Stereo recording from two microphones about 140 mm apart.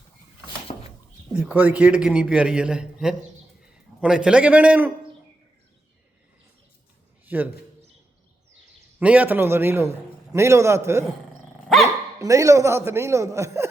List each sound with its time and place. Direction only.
1.4 s a man's voice: 10° right (ahead or behind)
7.3 s a man's voice: 10° right (ahead or behind)
9.0 s a man's voice: 10° right (ahead or behind)
11.7 s dog: centre (ahead or behind)
12.2 s a man's voice: 25° right (ahead or behind)